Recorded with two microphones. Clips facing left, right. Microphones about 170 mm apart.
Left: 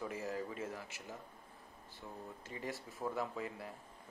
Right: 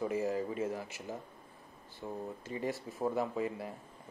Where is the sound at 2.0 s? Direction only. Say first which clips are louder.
Right 9 dB; 30° right (ahead or behind).